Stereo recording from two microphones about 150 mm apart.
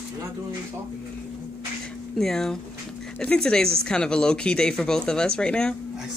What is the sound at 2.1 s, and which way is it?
Speech, 5° left (ahead or behind).